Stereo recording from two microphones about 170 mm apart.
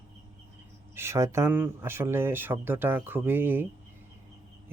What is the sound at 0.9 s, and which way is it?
Speech, 15° right (ahead or behind).